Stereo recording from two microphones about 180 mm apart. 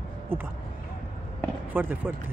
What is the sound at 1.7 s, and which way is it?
Speech, 10° right (ahead or behind).